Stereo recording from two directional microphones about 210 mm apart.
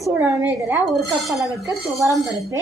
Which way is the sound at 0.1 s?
10° right (ahead or behind).